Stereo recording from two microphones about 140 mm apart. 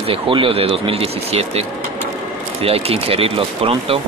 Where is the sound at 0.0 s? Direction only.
40° right (ahead or behind).